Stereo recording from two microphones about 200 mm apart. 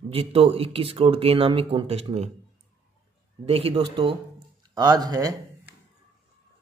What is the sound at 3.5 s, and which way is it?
Speech, 30° right (ahead or behind).